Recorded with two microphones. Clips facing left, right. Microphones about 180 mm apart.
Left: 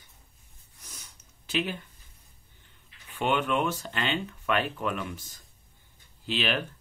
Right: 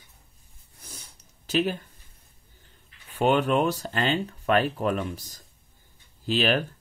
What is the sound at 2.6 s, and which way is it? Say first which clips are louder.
Speech: right 1 dB; 40° right (ahead or behind).